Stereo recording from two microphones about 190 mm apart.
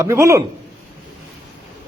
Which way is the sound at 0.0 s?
15° right (ahead or behind).